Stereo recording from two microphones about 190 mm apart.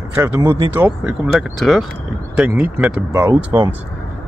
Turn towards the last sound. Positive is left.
turn(degrees=-15)  # may be behind; listen again after turning